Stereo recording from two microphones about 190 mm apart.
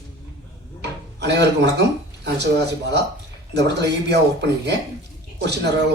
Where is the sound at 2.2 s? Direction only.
60° right (ahead or behind).